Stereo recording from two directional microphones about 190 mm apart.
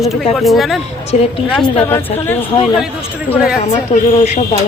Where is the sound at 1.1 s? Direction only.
35° left (ahead or behind).